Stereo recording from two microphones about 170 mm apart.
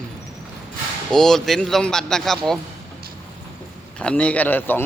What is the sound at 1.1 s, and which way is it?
Speech, 5° left (ahead or behind).